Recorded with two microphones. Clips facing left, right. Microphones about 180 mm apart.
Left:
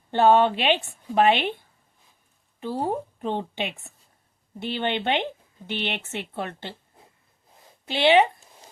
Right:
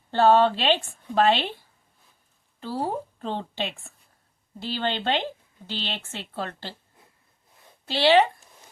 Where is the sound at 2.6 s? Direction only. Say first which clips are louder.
Left 2 dB; 20° left (ahead or behind).